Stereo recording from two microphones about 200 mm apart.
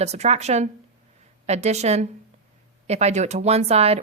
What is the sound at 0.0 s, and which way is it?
Speech, 30° right (ahead or behind).